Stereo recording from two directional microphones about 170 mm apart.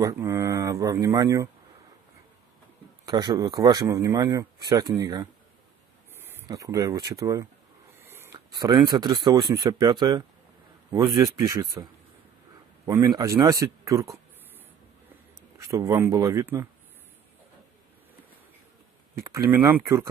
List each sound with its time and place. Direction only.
0.0 s speech: 15° right (ahead or behind)
3.1 s speech: 25° right (ahead or behind)
11.2 s speech: 15° right (ahead or behind)
12.8 s speech: 15° right (ahead or behind)
15.5 s speech: 15° right (ahead or behind)
19.1 s speech: 15° right (ahead or behind)